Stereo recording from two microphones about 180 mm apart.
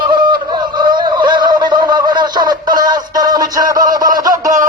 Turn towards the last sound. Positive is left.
turn(degrees=-20)  # may be behind; listen again after turning